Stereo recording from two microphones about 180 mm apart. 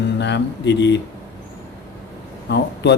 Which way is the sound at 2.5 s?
75° left (ahead or behind).